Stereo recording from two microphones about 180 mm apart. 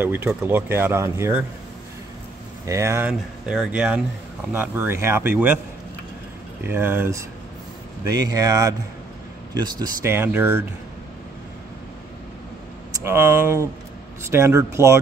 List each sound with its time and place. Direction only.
0.0 s speech: 10° right (ahead or behind)
2.6 s speech: 15° right (ahead or behind)
6.6 s speech: 10° right (ahead or behind)
10.1 s speech: 10° right (ahead or behind)
13.0 s speech: 15° right (ahead or behind)